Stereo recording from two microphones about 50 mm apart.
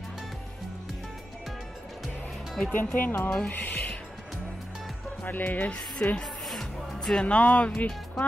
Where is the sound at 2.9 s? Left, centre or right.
Left.